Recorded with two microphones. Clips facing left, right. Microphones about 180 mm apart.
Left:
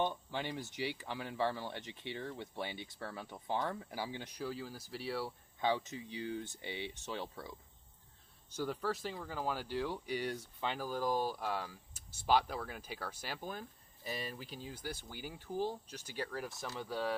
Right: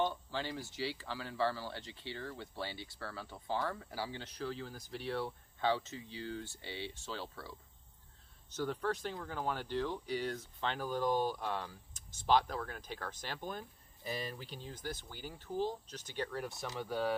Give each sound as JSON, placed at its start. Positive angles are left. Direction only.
{"t": 0.0, "sound": "speech", "side_deg": 15}